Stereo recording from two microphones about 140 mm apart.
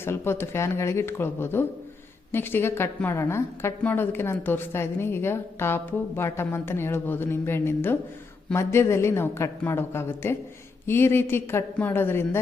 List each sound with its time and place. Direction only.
0.0 s a woman's voice: 15° left (ahead or behind)